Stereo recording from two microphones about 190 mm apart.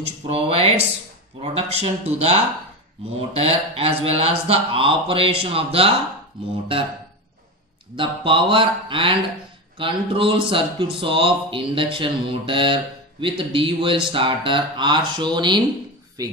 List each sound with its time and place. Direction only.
0.3 s speech: 30° right (ahead or behind)
7.9 s speech: 25° right (ahead or behind)